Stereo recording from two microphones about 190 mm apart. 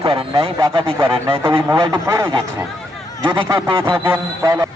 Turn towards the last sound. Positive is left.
turn(degrees=-15)  # may be behind; listen again after turning